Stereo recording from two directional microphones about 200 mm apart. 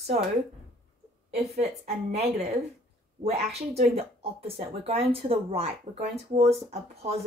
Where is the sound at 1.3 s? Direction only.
30° right (ahead or behind).